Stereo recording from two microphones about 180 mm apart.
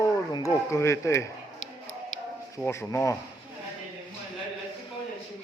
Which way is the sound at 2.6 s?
15° left (ahead or behind).